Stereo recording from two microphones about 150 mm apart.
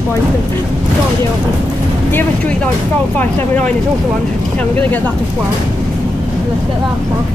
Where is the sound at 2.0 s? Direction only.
10° left (ahead or behind).